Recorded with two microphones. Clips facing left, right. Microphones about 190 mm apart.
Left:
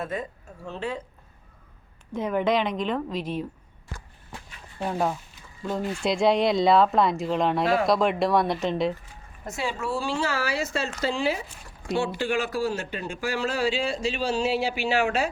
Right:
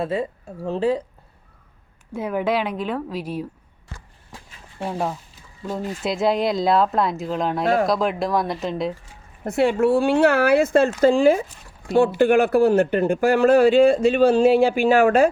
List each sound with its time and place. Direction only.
0.0 s speech: 30° right (ahead or behind)
2.1 s a woman's voice: 5° right (ahead or behind)
4.8 s speech: 5° right (ahead or behind)
9.4 s speech: 60° right (ahead or behind)